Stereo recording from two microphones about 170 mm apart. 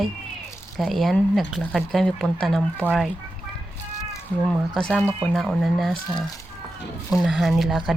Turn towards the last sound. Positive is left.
turn(degrees=0)  # may be behind; listen again after turning